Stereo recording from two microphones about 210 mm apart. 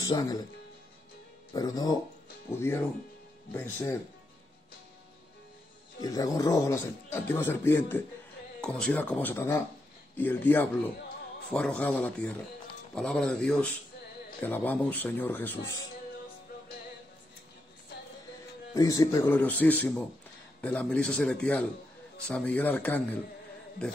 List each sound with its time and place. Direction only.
0.0 s speech: 15° left (ahead or behind)
1.5 s speech: 20° left (ahead or behind)
5.9 s speech: 15° left (ahead or behind)
18.7 s speech: 15° left (ahead or behind)